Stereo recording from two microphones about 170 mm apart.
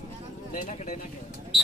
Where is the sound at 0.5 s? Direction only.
45° left (ahead or behind).